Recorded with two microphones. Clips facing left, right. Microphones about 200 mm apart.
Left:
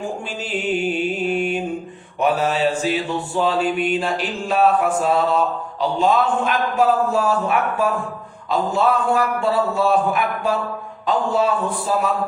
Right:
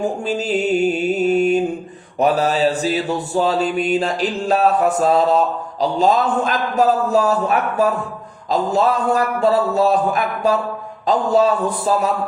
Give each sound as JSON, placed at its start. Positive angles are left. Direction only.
{"t": 0.0, "sound": "mantra", "side_deg": -40}